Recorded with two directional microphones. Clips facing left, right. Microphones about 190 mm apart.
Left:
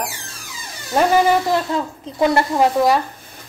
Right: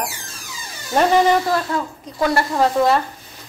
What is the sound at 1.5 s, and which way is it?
Speech, 20° left (ahead or behind).